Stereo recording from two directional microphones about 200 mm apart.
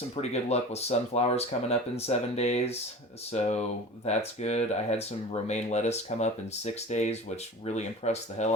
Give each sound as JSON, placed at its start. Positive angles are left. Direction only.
{"t": 0.2, "sound": "speech", "side_deg": 30}